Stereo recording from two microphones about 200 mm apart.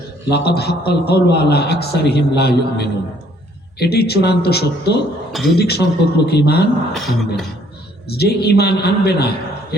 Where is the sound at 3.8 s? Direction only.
55° left (ahead or behind).